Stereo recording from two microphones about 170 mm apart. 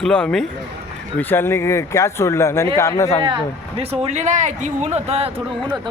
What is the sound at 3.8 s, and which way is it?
Speech, 40° right (ahead or behind).